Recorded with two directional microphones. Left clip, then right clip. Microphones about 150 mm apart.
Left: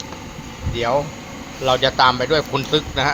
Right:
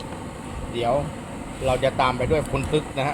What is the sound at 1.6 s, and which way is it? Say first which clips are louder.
A man's voice: left 6 dB; 20° left (ahead or behind).